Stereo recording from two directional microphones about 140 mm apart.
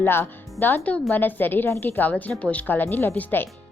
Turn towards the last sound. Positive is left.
turn(degrees=15)  # may be behind; listen again after turning